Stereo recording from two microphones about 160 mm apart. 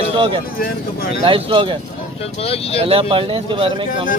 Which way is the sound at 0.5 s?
65° left (ahead or behind).